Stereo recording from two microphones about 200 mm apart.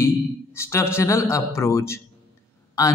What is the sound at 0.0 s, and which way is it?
A man's voice, 15° left (ahead or behind).